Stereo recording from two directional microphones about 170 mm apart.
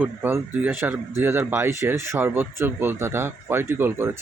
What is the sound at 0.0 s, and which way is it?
Speech, 15° right (ahead or behind).